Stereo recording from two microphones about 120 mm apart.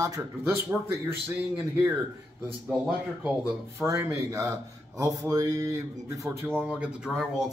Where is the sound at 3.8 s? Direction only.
25° right (ahead or behind).